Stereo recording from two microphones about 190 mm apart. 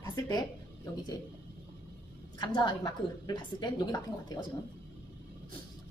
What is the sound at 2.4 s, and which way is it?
Speech, 25° left (ahead or behind).